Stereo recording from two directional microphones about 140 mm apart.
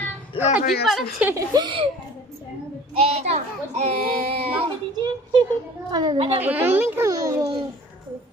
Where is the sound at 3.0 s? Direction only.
50° right (ahead or behind).